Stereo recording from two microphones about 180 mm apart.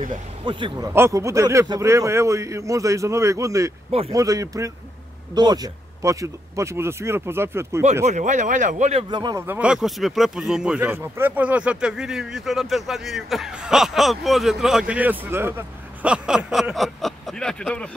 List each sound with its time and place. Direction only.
0.5 s speech: 25° right (ahead or behind)
8.0 s speech: 40° right (ahead or behind)
9.1 s speech: 25° right (ahead or behind)
9.5 s speech: 5° right (ahead or behind)